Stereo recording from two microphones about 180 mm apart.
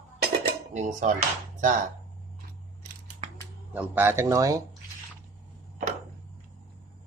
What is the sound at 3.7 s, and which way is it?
Speech, 10° right (ahead or behind).